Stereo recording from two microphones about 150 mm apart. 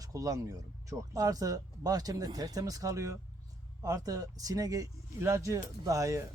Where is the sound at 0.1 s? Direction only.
25° right (ahead or behind).